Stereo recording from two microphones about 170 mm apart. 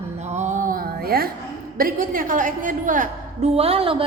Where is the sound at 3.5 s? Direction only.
35° right (ahead or behind).